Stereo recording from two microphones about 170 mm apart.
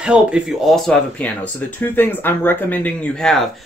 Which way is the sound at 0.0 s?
5° right (ahead or behind).